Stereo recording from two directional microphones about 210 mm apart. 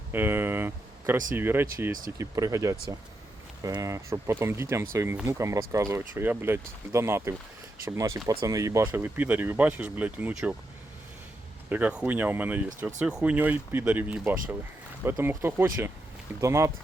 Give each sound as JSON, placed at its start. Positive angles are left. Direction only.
{"t": 0.1, "sound": "speech", "side_deg": -10}
{"t": 11.7, "sound": "speech", "side_deg": -5}